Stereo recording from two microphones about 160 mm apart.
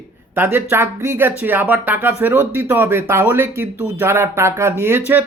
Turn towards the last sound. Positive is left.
turn(degrees=-15)  # may be behind; listen again after turning